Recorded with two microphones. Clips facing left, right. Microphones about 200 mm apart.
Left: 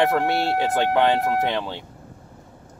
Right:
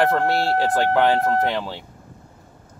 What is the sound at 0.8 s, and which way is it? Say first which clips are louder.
Speech: even; centre (ahead or behind).